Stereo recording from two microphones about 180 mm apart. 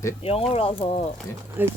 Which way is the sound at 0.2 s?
35° left (ahead or behind).